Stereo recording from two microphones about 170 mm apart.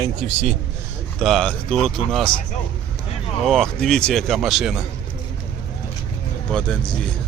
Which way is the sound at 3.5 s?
5° left (ahead or behind).